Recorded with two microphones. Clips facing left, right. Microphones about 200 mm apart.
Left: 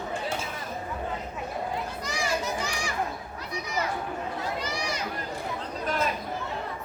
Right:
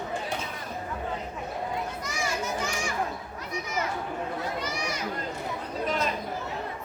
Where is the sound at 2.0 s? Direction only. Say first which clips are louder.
Left 2 dB; 35° left (ahead or behind).